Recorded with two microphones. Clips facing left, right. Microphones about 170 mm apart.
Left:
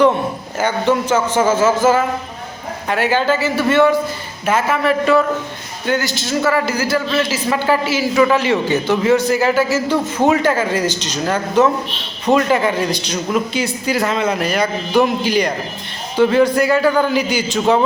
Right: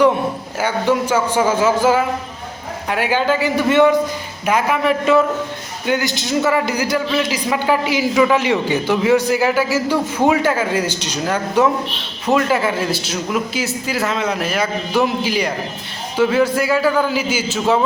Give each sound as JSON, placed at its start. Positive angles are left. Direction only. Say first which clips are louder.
{"t": 0.6, "sound": "a man's voice", "louder": "left 1 dB", "side_deg": -10}